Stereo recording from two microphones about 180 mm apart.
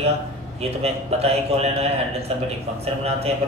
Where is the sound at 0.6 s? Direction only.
35° right (ahead or behind).